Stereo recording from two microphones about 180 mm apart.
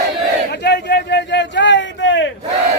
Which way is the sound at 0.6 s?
65° left (ahead or behind).